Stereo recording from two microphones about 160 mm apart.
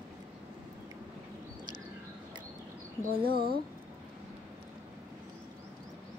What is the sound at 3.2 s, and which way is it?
Speech, 70° right (ahead or behind).